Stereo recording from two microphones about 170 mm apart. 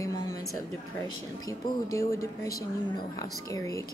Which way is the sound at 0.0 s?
20° left (ahead or behind).